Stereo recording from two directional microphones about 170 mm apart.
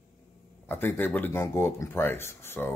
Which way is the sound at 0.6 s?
15° left (ahead or behind).